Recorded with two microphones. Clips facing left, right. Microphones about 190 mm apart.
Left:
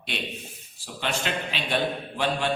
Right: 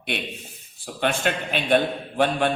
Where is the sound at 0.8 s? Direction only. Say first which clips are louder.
Right 6 dB; 55° right (ahead or behind).